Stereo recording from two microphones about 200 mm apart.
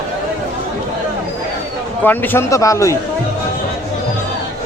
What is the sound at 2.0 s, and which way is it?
Speech, 10° left (ahead or behind).